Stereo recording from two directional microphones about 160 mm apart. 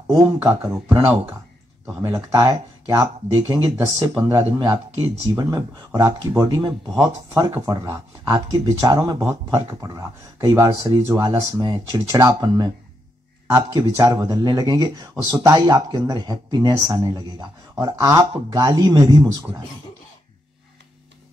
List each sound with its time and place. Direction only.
0.0 s speech: 10° right (ahead or behind)